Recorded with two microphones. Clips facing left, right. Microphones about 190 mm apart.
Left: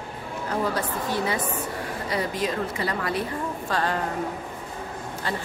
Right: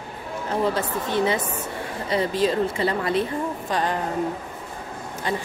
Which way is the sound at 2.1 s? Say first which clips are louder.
Right 6 dB; 30° right (ahead or behind).